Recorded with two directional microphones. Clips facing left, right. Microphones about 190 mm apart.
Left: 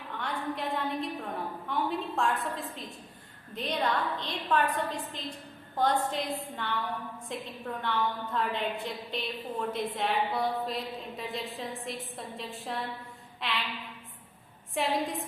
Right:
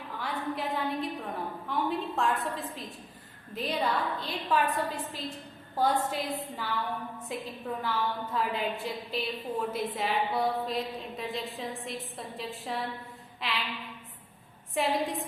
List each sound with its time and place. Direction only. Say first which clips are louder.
0.1 s a woman's voice: even; 5° right (ahead or behind)
14.8 s a woman's voice: right 1 dB; centre (ahead or behind)